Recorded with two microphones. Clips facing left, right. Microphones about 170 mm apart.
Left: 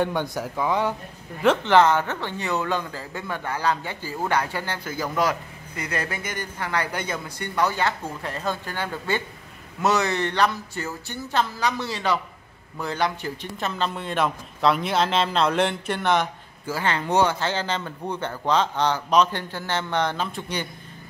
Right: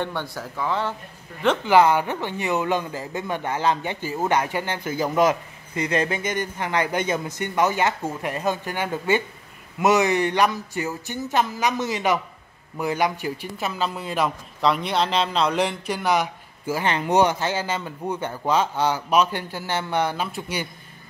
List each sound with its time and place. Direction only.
0.0 s speech: 15° left (ahead or behind)
1.4 s speech: centre (ahead or behind)
1.7 s a man's voice: 10° right (ahead or behind)